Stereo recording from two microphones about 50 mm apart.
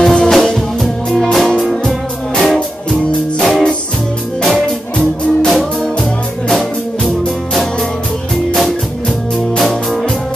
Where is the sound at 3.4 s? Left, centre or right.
Centre.